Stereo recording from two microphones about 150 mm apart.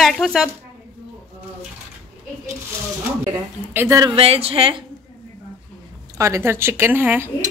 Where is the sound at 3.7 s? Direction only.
20° right (ahead or behind).